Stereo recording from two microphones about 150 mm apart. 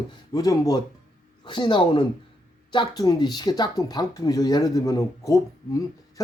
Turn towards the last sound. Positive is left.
turn(degrees=20)  # may be behind; listen again after turning